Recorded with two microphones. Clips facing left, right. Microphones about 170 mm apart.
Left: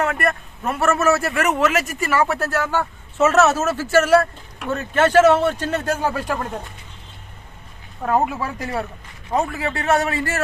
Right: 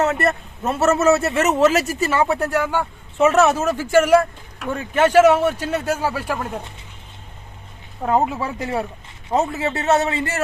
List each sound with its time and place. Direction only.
0.0 s a man's voice: 25° right (ahead or behind); by 6.6 s 5° right (ahead or behind)
8.0 s a man's voice: 20° right (ahead or behind)